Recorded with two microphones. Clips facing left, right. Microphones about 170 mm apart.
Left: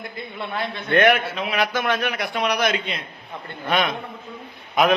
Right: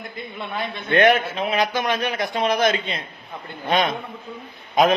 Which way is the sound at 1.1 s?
35° right (ahead or behind).